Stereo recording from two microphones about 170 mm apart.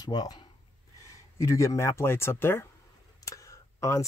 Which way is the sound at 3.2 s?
20° left (ahead or behind).